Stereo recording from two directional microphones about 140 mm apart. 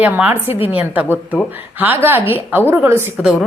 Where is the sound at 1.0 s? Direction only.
15° left (ahead or behind).